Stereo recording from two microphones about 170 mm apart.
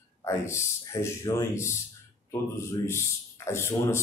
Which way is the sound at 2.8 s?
15° left (ahead or behind).